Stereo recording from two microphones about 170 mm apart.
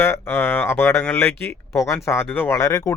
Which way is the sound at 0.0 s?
15° left (ahead or behind).